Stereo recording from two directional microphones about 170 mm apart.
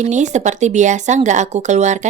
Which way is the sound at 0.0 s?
45° right (ahead or behind).